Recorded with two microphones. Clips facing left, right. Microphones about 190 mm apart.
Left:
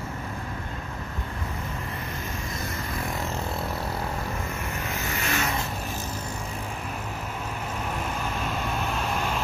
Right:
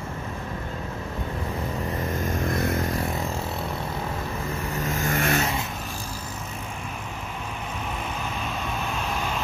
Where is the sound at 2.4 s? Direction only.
55° right (ahead or behind).